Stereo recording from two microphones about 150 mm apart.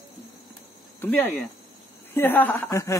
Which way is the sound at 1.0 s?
15° left (ahead or behind).